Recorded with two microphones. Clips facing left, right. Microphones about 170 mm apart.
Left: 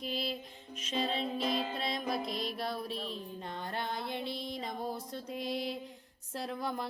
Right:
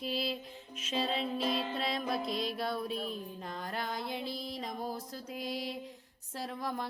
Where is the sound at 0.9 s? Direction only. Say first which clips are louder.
Even; centre (ahead or behind).